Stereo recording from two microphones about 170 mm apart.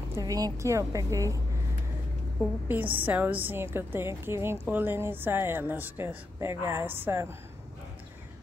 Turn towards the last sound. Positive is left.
turn(degrees=-15)  # may be behind; listen again after turning